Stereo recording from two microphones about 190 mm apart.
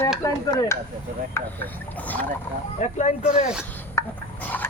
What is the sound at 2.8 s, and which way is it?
Speech, 40° left (ahead or behind).